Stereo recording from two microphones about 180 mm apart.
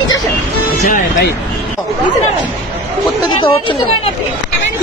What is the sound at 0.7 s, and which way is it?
Speech, 45° left (ahead or behind).